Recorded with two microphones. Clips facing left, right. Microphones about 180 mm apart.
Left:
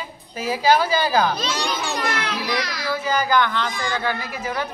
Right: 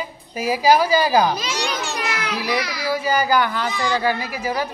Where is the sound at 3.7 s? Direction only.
50° left (ahead or behind).